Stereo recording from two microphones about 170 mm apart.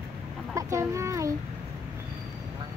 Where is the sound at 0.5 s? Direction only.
15° right (ahead or behind).